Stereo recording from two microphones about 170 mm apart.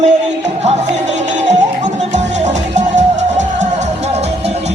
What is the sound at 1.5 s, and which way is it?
Music, 45° right (ahead or behind).